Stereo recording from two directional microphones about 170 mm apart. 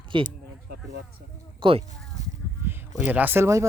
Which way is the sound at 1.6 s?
30° right (ahead or behind).